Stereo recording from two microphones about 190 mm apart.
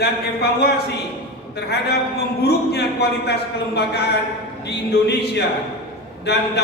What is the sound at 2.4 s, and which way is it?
Speech, 60° left (ahead or behind).